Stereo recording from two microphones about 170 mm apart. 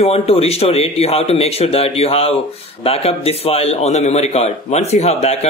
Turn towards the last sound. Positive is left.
turn(degrees=40)  # may be behind; listen again after turning